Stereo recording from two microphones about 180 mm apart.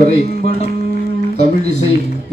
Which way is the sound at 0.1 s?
35° left (ahead or behind).